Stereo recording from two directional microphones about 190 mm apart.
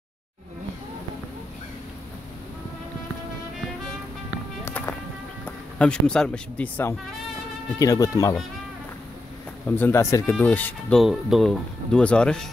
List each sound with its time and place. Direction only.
4.6 s music: 10° left (ahead or behind)
5.4 s speech: 5° left (ahead or behind)
9.7 s speech: 10° left (ahead or behind)